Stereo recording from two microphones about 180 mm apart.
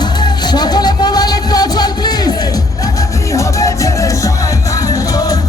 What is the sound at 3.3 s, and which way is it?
Music, 15° left (ahead or behind).